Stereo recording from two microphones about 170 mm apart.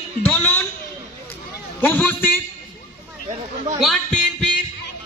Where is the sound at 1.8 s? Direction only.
10° left (ahead or behind).